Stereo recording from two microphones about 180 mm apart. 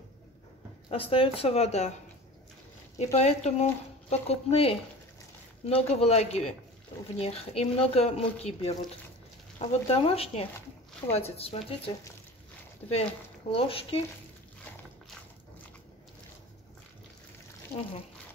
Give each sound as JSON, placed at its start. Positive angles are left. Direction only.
{"t": 0.8, "sound": "speech", "side_deg": 30}
{"t": 3.0, "sound": "speech", "side_deg": 35}
{"t": 13.5, "sound": "speech", "side_deg": 30}